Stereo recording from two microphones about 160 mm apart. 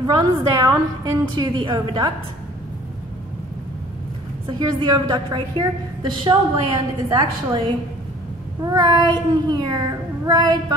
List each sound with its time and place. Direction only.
0.0 s child singing: 25° right (ahead or behind)
4.5 s child singing: 30° right (ahead or behind)